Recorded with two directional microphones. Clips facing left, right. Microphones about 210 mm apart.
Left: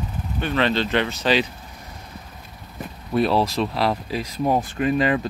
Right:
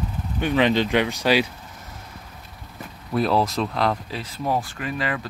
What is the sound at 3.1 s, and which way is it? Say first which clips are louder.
Speech: left 1 dB; centre (ahead or behind).